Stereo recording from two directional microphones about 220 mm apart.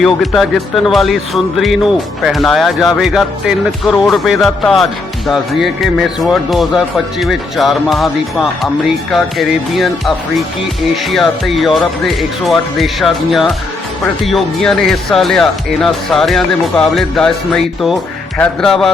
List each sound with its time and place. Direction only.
0.0 s speech: centre (ahead or behind)
9.1 s speech: centre (ahead or behind)
11.1 s speech: centre (ahead or behind)